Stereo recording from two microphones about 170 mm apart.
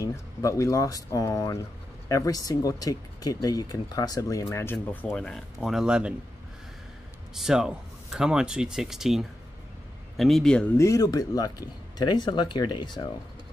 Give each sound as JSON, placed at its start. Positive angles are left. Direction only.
{"t": 0.0, "sound": "speech", "side_deg": 20}
{"t": 5.1, "sound": "speech", "side_deg": 5}
{"t": 7.3, "sound": "speech", "side_deg": -5}
{"t": 10.8, "sound": "speech", "side_deg": 20}